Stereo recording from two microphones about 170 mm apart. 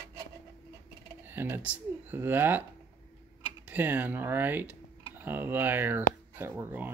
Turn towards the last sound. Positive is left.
turn(degrees=-10)  # may be behind; listen again after turning